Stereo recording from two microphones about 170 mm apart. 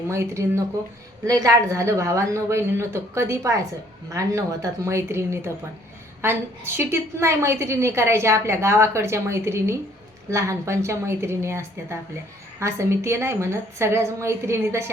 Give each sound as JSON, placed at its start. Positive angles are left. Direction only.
{"t": 0.1, "sound": "a woman's voice", "side_deg": -15}